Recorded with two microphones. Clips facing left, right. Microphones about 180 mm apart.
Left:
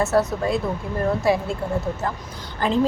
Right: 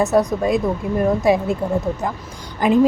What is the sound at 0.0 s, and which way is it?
Speech, 15° right (ahead or behind).